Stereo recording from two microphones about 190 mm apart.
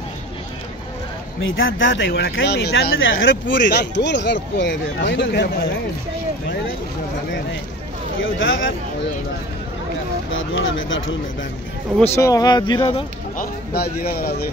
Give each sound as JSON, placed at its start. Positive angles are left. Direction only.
{"t": 1.4, "sound": "speech", "side_deg": 90}
{"t": 2.3, "sound": "speech", "side_deg": 60}
{"t": 3.0, "sound": "speech", "side_deg": 90}
{"t": 8.2, "sound": "speech", "side_deg": 90}
{"t": 10.3, "sound": "speech", "side_deg": 90}
{"t": 12.0, "sound": "speech", "side_deg": 15}
{"t": 13.4, "sound": "speech", "side_deg": 55}